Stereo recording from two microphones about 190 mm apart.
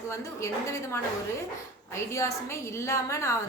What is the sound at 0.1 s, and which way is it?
A woman's voice, 15° left (ahead or behind).